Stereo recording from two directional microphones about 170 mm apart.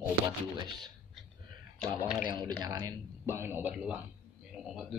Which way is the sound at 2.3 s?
25° right (ahead or behind).